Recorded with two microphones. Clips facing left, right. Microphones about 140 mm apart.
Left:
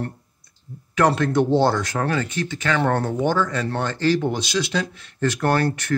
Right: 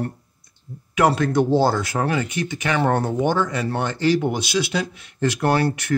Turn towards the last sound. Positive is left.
turn(degrees=-10)  # may be behind; listen again after turning